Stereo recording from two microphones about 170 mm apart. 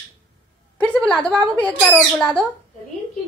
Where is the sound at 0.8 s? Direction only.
10° left (ahead or behind).